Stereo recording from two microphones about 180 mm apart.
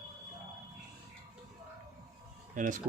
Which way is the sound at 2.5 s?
45° right (ahead or behind).